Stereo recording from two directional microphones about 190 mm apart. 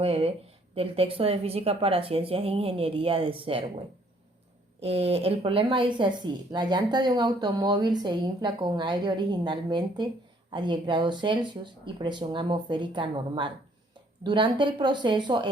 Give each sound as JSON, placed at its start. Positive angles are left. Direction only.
{"t": 0.0, "sound": "speech", "side_deg": -30}
{"t": 4.8, "sound": "speech", "side_deg": -30}